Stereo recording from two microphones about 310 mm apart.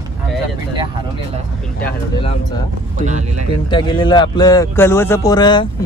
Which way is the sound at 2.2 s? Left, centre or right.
Centre.